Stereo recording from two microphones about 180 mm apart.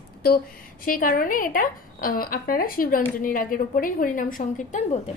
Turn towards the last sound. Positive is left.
turn(degrees=45)  # may be behind; listen again after turning